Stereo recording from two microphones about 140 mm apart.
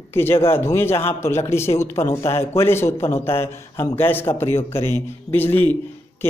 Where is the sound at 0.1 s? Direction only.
15° left (ahead or behind).